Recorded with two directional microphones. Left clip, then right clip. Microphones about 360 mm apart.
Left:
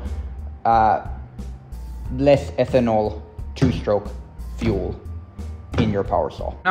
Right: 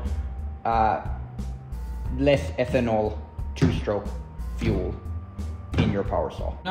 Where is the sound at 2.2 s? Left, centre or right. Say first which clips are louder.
Left 5 dB; left.